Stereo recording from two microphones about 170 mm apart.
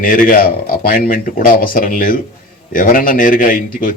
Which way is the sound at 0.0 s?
55° left (ahead or behind).